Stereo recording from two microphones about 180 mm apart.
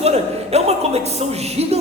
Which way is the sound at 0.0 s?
35° right (ahead or behind).